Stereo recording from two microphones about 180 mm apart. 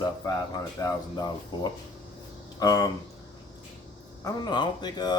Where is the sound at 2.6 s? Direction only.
20° left (ahead or behind).